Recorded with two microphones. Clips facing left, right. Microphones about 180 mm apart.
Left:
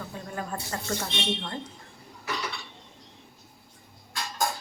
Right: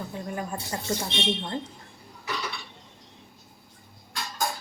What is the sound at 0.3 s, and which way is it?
Speech, 15° right (ahead or behind).